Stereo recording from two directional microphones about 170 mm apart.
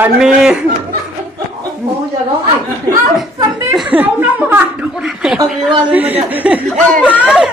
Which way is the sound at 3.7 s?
10° right (ahead or behind).